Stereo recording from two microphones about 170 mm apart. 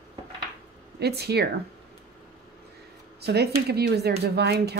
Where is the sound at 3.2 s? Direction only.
75° right (ahead or behind).